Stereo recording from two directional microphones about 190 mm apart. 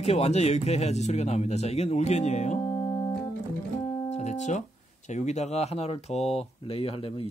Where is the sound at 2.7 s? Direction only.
15° left (ahead or behind).